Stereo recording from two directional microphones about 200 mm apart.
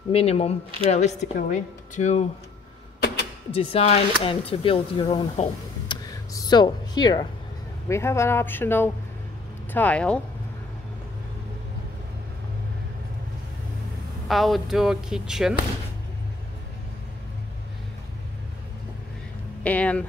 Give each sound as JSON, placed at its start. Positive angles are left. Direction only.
{"t": 0.1, "sound": "speech", "side_deg": 30}
{"t": 3.5, "sound": "speech", "side_deg": 30}
{"t": 14.2, "sound": "speech", "side_deg": 0}
{"t": 19.6, "sound": "speech", "side_deg": 5}